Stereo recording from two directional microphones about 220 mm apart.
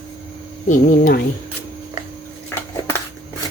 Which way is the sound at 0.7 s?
40° left (ahead or behind).